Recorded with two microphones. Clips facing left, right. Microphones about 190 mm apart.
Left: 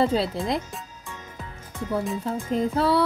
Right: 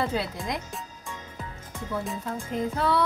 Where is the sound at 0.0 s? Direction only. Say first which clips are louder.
Left 6 dB; 30° left (ahead or behind).